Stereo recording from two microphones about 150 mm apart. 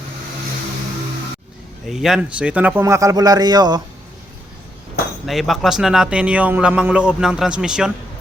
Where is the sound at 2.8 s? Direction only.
20° right (ahead or behind).